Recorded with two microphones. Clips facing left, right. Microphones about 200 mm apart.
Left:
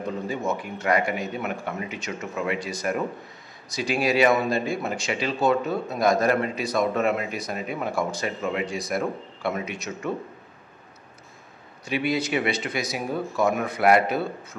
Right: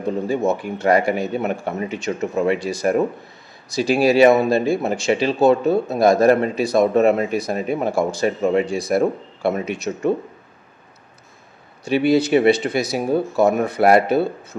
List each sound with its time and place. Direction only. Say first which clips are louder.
0.5 s a man's voice: right 5 dB; 35° right (ahead or behind)
11.8 s a man's voice: right 9 dB; 30° right (ahead or behind)